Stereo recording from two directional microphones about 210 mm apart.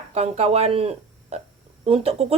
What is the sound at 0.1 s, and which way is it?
A woman's voice, 30° right (ahead or behind).